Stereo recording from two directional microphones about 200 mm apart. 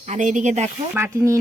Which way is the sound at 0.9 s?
10° right (ahead or behind).